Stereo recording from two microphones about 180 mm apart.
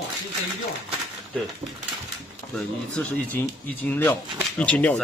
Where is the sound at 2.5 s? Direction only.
10° left (ahead or behind).